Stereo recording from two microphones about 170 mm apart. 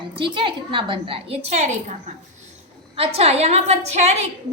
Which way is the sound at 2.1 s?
45° right (ahead or behind).